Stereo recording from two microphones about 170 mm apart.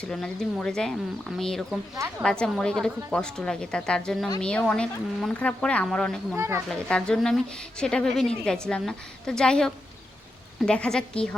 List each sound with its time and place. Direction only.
0.0 s a woman's voice: 5° left (ahead or behind)
6.3 s speech: 15° right (ahead or behind)
6.7 s a woman's voice: 5° left (ahead or behind)